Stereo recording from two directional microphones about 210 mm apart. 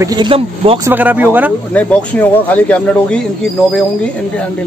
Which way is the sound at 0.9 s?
10° right (ahead or behind).